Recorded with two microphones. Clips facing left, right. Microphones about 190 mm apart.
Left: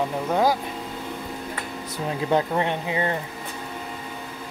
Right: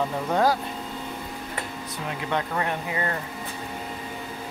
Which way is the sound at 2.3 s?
30° left (ahead or behind).